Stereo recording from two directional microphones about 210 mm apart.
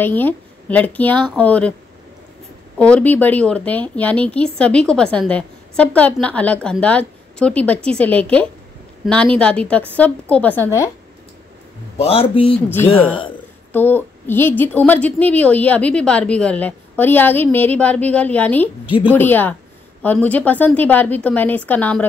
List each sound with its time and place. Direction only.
0.0 s speech: 10° left (ahead or behind)
2.8 s a woman's voice: 5° left (ahead or behind)
12.0 s a man's voice: 25° left (ahead or behind)
13.7 s a woman's voice: 10° left (ahead or behind)